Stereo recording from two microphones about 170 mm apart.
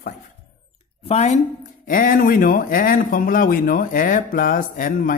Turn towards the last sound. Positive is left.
turn(degrees=55)  # may be behind; listen again after turning